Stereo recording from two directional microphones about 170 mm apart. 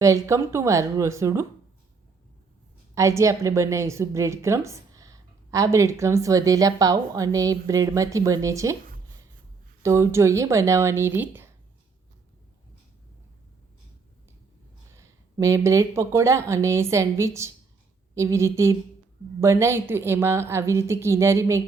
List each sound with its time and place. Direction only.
0.0 s a woman's voice: 20° right (ahead or behind)
2.9 s a woman's voice: 20° right (ahead or behind)
9.8 s speech: 15° right (ahead or behind)
14.9 s speech: 15° right (ahead or behind)